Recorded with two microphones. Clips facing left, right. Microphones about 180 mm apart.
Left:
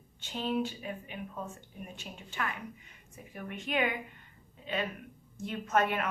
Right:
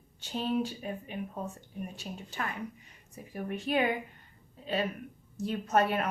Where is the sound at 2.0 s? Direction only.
35° right (ahead or behind).